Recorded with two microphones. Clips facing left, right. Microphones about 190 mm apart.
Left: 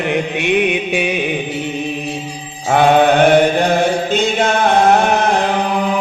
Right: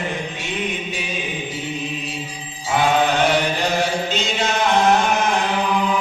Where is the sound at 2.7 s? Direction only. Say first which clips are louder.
Left 7 dB; 60° left (ahead or behind).